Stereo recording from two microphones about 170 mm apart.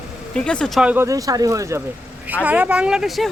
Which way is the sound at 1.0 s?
20° right (ahead or behind).